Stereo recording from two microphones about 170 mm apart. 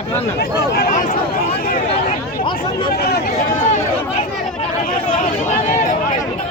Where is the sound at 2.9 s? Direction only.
65° left (ahead or behind).